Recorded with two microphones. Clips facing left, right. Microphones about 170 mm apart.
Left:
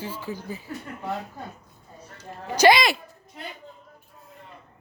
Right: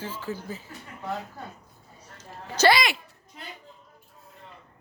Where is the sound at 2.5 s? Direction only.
15° left (ahead or behind).